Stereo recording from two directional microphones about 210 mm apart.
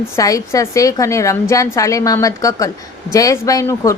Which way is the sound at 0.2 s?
15° left (ahead or behind).